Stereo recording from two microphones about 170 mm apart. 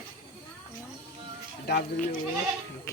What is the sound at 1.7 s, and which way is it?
Speech, 80° left.